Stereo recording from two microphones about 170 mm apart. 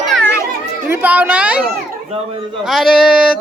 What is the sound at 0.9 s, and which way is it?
Speech, 10° right (ahead or behind).